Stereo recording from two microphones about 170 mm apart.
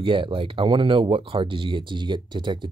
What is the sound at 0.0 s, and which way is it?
Speech, 30° right (ahead or behind).